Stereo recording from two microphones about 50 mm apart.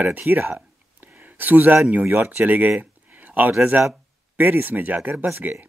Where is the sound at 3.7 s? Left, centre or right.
Right.